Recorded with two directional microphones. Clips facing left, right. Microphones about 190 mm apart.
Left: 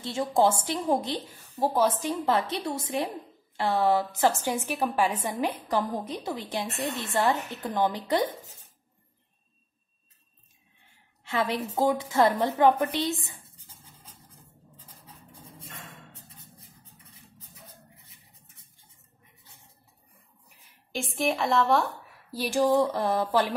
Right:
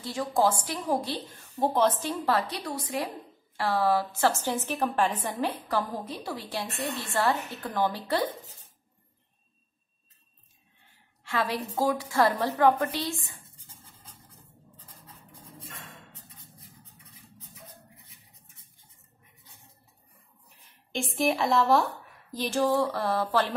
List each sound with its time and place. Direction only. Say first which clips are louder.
0.0 s a woman's voice: left 2 dB; 25° left (ahead or behind)
1.1 s a woman's voice: left 2 dB; 10° left (ahead or behind)
11.2 s a woman's voice: left 2 dB; 20° left (ahead or behind)
20.9 s a woman's voice: right 1 dB; centre (ahead or behind)
22.3 s speech: left 2 dB; 10° left (ahead or behind)